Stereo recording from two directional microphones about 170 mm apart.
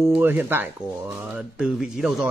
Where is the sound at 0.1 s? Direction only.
10° right (ahead or behind).